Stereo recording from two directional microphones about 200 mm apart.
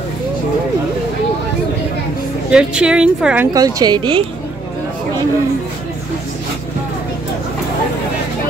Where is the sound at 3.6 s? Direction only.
20° right (ahead or behind).